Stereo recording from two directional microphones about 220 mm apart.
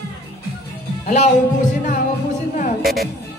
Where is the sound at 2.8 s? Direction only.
Centre (ahead or behind).